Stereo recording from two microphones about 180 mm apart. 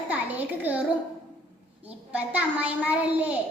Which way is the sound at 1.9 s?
10° right (ahead or behind).